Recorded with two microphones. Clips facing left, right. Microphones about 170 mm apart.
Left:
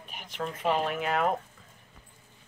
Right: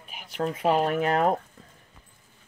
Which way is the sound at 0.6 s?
45° right (ahead or behind).